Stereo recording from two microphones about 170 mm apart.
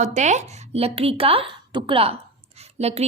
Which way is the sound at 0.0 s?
45° right (ahead or behind).